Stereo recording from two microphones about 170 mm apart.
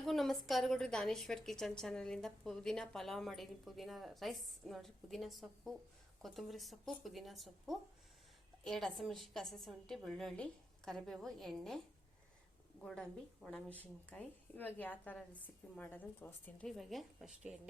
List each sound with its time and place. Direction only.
0.0 s a woman's voice: centre (ahead or behind)
12.8 s a woman's voice: 5° left (ahead or behind)